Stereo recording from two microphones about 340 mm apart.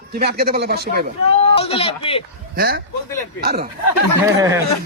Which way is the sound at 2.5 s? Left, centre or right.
Right.